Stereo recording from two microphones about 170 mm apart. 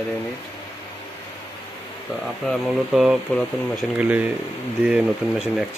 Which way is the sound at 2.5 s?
5° right (ahead or behind).